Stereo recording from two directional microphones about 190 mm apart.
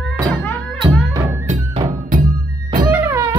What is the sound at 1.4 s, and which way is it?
Music, 30° right (ahead or behind).